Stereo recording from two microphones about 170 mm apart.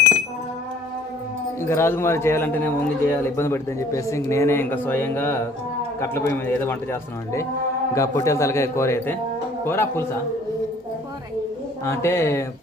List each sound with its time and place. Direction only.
1.6 s speech: 15° left (ahead or behind)
11.9 s speech: 15° left (ahead or behind)